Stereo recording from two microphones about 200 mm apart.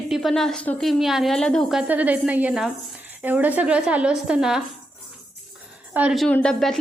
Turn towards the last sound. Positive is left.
turn(degrees=5)  # may be behind; listen again after turning